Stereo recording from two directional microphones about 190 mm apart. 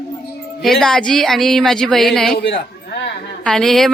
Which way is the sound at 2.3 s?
60° left (ahead or behind).